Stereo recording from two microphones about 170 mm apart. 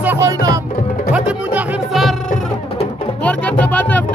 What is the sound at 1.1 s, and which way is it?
Music, 5° right (ahead or behind).